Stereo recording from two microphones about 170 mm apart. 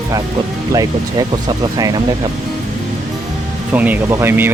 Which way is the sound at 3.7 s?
10° right (ahead or behind).